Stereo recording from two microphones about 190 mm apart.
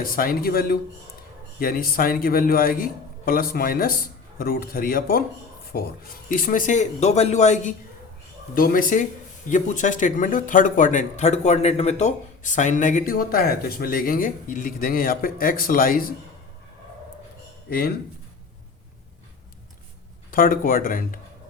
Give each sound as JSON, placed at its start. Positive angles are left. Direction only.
{"t": 0.0, "sound": "a man's voice", "side_deg": 50}
{"t": 17.7, "sound": "speech", "side_deg": 50}
{"t": 20.3, "sound": "speech", "side_deg": 50}